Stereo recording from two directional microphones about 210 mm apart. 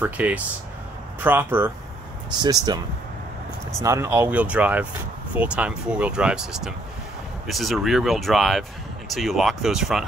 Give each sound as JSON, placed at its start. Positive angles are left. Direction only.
{"t": 0.0, "sound": "speech", "side_deg": -10}